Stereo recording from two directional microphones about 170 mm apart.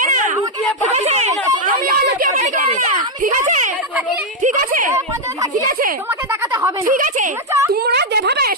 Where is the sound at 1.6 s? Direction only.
55° right (ahead or behind).